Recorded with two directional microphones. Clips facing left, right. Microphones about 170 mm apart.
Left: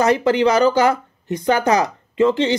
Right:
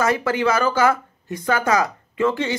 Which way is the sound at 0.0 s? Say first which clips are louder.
Left 5 dB; 20° left (ahead or behind).